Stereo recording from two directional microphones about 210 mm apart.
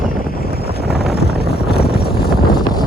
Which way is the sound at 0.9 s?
Centre (ahead or behind).